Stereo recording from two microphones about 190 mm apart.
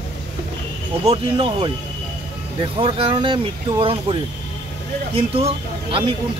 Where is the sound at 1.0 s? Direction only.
25° right (ahead or behind).